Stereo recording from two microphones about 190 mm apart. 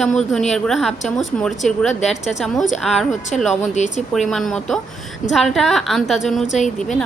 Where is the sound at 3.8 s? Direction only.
35° left (ahead or behind).